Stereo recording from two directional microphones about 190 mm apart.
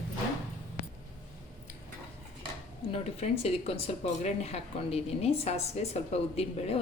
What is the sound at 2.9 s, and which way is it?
Speech, 30° left (ahead or behind).